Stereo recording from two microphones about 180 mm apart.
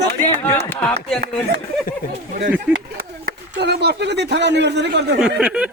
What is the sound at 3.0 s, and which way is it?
Speech, 60° right (ahead or behind).